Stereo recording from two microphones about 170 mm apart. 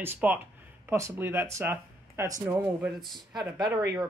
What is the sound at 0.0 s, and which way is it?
A woman's voice, 10° right (ahead or behind).